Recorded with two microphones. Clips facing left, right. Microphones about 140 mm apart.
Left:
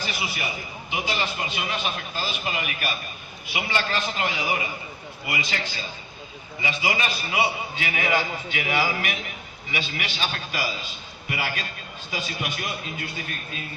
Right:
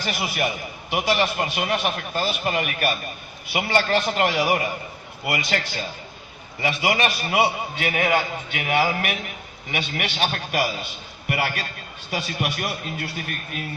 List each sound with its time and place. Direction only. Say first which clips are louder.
0.0 s a man's voice: right 5 dB; 65° right (ahead or behind)